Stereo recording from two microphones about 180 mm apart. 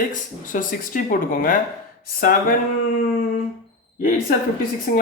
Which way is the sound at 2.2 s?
55° left (ahead or behind).